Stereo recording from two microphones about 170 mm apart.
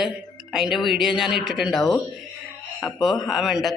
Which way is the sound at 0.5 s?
5° right (ahead or behind).